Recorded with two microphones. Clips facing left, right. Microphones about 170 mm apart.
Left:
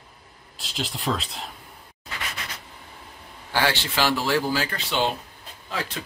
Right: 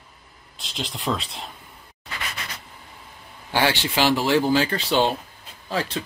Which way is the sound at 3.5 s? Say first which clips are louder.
Right 2 dB; 15° right (ahead or behind).